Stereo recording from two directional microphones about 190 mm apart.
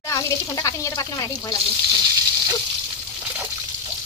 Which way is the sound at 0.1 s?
15° left (ahead or behind).